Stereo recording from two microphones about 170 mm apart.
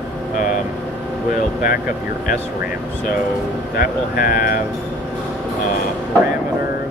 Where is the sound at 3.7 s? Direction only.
60° left (ahead or behind).